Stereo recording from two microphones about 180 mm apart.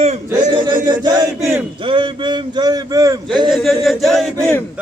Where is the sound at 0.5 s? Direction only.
25° right (ahead or behind).